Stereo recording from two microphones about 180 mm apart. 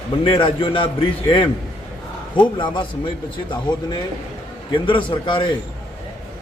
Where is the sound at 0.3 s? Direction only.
30° left (ahead or behind).